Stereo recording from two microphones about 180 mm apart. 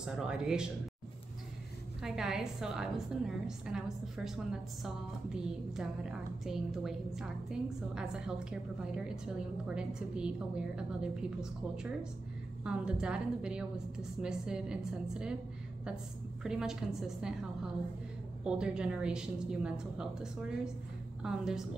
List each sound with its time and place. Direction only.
0.0 s a woman's voice: 5° right (ahead or behind)
2.0 s a woman's voice: 5° right (ahead or behind)
16.4 s a woman's voice: 5° right (ahead or behind)